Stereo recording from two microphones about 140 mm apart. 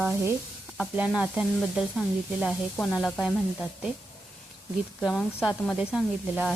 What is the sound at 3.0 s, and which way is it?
Speech, centre (ahead or behind).